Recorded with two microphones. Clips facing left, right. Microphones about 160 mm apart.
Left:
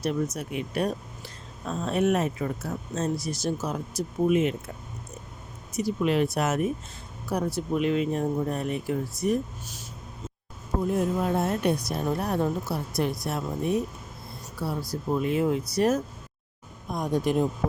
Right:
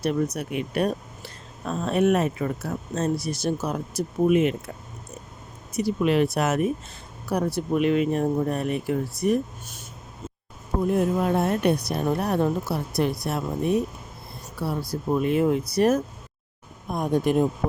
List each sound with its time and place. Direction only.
0.0 s speech: 65° right (ahead or behind)
5.7 s speech: 65° right (ahead or behind)
10.9 s speech: 65° right (ahead or behind)
14.8 s speech: 60° right (ahead or behind)